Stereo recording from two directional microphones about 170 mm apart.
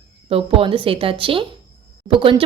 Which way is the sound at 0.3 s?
35° right (ahead or behind).